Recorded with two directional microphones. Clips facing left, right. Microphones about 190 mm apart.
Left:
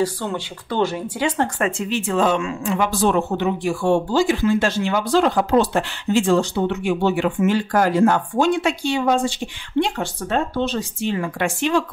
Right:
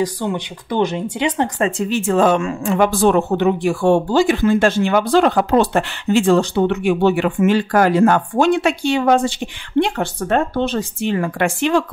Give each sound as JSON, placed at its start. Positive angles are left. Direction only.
{"t": 0.0, "sound": "speech", "side_deg": -15}
{"t": 1.6, "sound": "a woman's voice", "side_deg": -40}